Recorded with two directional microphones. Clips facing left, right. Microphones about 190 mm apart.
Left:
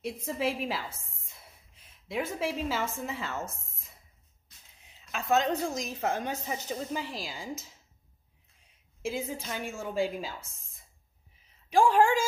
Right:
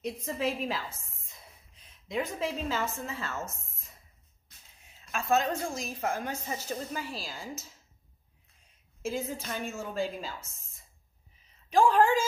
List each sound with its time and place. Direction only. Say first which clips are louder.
0.0 s a woman's voice: even; 10° left (ahead or behind)
2.0 s a woman's voice: even; 10° left (ahead or behind)
5.1 s a woman's voice: left 1 dB; 20° left (ahead or behind)
9.0 s a woman's voice: even; 10° left (ahead or behind)
11.7 s a woman's voice: even; 10° left (ahead or behind)